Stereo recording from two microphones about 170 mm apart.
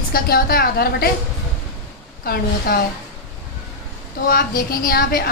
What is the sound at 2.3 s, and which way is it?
Speech, 60° left (ahead or behind).